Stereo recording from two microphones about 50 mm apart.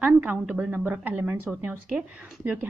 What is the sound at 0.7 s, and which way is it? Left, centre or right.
A woman's voice, right.